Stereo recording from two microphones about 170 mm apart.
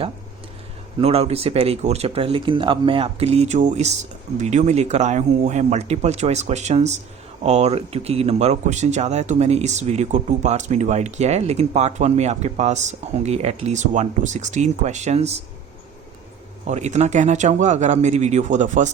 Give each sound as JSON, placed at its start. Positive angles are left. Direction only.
{"t": 0.9, "sound": "speech", "side_deg": -35}
{"t": 16.6, "sound": "speech", "side_deg": -40}